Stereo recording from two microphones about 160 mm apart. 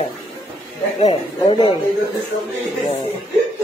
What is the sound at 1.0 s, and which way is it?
Speech, 35° left (ahead or behind).